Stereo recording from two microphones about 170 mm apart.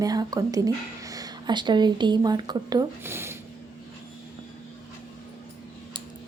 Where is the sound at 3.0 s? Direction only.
15° right (ahead or behind).